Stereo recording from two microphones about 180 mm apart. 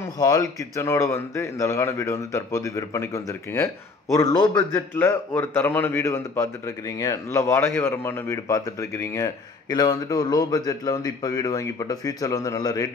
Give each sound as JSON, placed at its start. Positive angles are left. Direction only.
{"t": 0.2, "sound": "a man's voice", "side_deg": 20}